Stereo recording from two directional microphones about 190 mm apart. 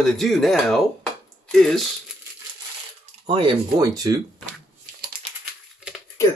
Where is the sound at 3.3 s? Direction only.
25° right (ahead or behind).